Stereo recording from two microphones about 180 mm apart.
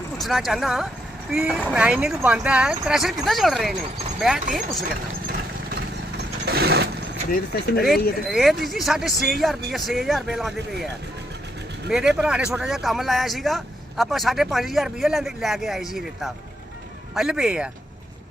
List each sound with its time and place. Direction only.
0.2 s a man's voice: centre (ahead or behind)
6.1 s a sound: 60° right (ahead or behind)
7.5 s speech: 60° left (ahead or behind)
8.3 s a man's voice: centre (ahead or behind)
11.9 s a man's voice: 5° right (ahead or behind)